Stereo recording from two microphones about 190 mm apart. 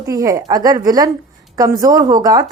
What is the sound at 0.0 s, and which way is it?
Speech, 20° right (ahead or behind).